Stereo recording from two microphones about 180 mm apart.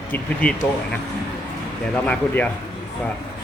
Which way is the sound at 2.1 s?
10° left (ahead or behind).